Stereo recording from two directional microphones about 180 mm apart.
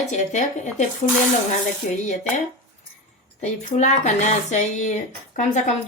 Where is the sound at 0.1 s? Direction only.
40° left (ahead or behind).